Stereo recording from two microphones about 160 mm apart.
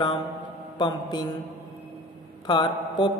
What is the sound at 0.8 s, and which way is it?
Mantra, 25° left (ahead or behind).